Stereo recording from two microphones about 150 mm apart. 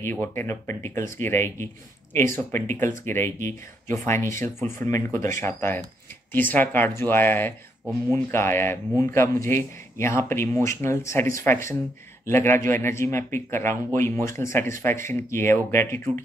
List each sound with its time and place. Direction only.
0.0 s a man's voice: 15° left (ahead or behind)